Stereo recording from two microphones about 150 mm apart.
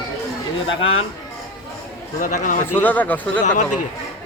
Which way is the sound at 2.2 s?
55° left (ahead or behind).